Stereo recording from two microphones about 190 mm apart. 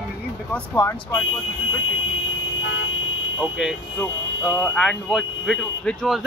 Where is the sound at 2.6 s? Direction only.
90° left.